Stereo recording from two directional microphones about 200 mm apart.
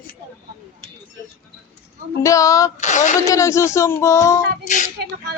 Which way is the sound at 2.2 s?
15° left (ahead or behind).